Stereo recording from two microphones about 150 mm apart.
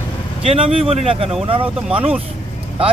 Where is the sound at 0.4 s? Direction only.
40° right (ahead or behind).